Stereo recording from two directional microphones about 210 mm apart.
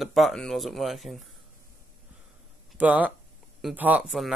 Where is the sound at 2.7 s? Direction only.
5° right (ahead or behind).